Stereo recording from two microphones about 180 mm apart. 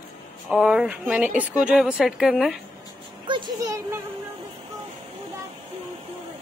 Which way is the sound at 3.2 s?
25° right (ahead or behind).